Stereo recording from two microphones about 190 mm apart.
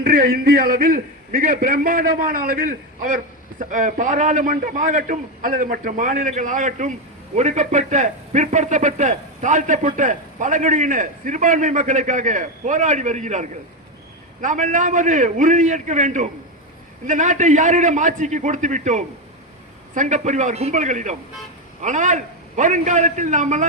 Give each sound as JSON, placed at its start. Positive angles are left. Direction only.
{"t": 0.0, "sound": "a man's voice", "side_deg": -50}